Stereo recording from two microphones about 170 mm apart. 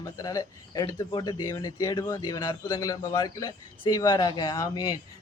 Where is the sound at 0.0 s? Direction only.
20° left (ahead or behind).